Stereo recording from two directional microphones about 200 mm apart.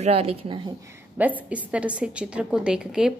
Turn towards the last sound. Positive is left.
turn(degrees=-5)  # may be behind; listen again after turning